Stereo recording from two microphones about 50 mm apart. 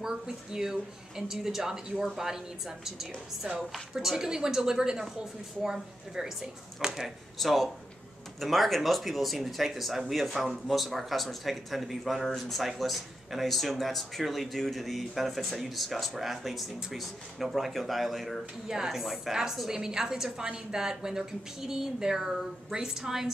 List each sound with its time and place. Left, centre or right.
0.0 s a woman's voice: centre